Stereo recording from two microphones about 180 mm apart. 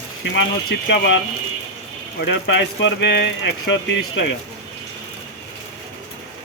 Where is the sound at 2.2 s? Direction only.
75° left (ahead or behind).